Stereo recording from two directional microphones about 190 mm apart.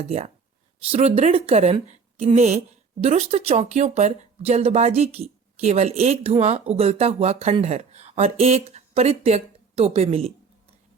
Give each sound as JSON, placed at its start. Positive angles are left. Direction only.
{"t": 0.0, "sound": "speech", "side_deg": -30}